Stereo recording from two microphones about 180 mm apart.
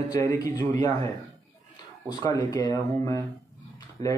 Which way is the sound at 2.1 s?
20° left (ahead or behind).